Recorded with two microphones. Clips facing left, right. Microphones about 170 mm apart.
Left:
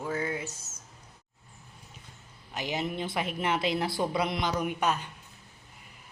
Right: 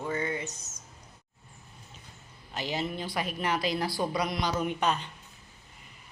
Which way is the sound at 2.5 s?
15° left (ahead or behind).